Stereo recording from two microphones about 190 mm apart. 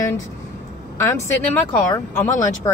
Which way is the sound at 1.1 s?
10° left (ahead or behind).